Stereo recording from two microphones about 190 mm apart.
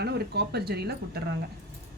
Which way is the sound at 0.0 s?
60° right (ahead or behind).